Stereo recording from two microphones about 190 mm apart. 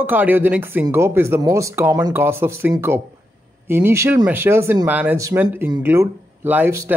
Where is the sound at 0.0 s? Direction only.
10° right (ahead or behind).